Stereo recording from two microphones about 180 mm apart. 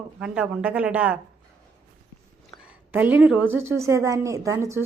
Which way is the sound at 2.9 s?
10° right (ahead or behind).